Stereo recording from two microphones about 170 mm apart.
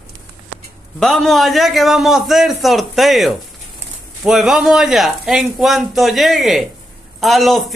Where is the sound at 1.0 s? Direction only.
Centre (ahead or behind).